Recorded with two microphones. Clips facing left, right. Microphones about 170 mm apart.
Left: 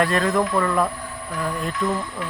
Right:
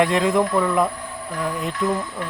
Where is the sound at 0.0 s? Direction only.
15° right (ahead or behind).